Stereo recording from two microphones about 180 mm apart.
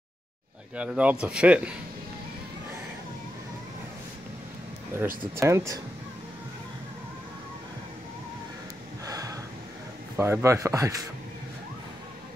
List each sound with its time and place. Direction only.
0.7 s speech: 5° right (ahead or behind)
5.3 s speech: 15° right (ahead or behind)
9.0 s gasp: 20° right (ahead or behind)
10.1 s speech: 15° right (ahead or behind)